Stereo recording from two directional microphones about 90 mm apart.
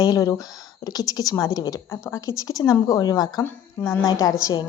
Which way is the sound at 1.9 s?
35° left (ahead or behind).